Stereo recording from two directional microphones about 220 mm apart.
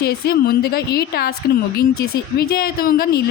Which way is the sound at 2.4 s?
45° left (ahead or behind).